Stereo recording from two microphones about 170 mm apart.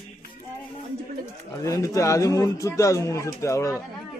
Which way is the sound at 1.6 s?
20° left (ahead or behind).